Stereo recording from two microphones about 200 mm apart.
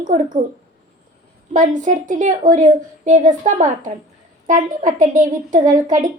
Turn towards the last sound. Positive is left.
turn(degrees=-40)  # may be behind; listen again after turning